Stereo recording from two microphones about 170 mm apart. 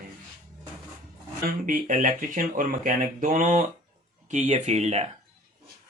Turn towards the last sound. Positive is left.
turn(degrees=-40)  # may be behind; listen again after turning